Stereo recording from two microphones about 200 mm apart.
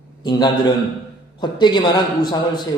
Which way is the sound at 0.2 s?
20° left (ahead or behind).